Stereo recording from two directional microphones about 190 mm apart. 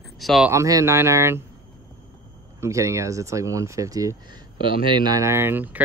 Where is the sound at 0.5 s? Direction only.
15° right (ahead or behind).